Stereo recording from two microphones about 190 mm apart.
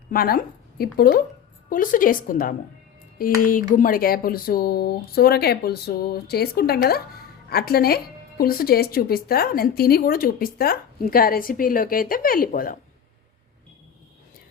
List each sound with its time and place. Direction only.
0.1 s speech: 50° left (ahead or behind)